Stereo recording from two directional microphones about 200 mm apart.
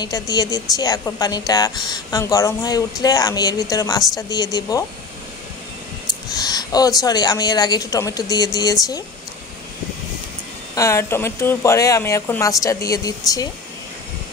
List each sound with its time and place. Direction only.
0.0 s a woman's voice: 20° left (ahead or behind)
6.3 s a woman's voice: 20° left (ahead or behind)
10.7 s speech: 15° left (ahead or behind)